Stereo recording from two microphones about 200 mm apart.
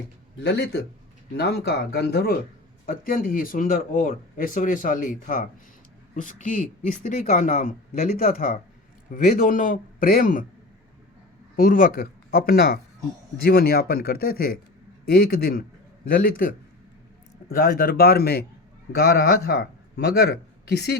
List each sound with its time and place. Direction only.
0.4 s a man's voice: 55° left (ahead or behind)
11.5 s speech: 45° left (ahead or behind)
17.5 s a man's voice: 45° left (ahead or behind)